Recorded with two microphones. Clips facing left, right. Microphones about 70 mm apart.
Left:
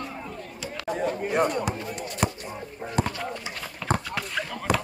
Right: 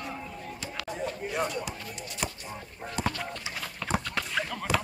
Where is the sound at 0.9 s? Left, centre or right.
Left.